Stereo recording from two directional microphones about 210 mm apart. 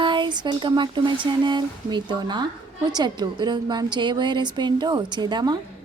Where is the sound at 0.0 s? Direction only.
20° right (ahead or behind).